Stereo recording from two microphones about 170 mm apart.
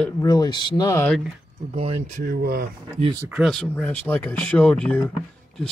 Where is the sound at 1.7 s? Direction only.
35° right (ahead or behind).